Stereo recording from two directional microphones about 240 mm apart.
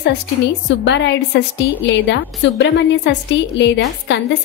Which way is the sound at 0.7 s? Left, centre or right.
Left.